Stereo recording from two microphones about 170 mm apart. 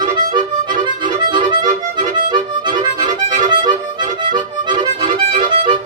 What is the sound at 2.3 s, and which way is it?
Music, 25° right (ahead or behind).